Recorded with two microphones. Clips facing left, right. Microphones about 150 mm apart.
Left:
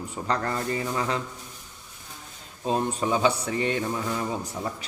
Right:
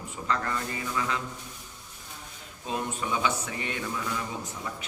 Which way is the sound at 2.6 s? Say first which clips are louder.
Left 6 dB; 35° left (ahead or behind).